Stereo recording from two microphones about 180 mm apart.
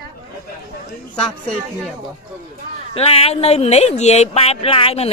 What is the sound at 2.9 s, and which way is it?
Speech, 35° left (ahead or behind).